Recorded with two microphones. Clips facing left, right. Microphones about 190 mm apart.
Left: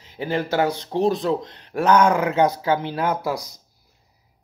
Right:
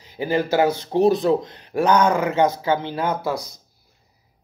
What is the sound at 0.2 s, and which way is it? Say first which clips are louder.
A man's voice: right 3 dB; 5° right (ahead or behind).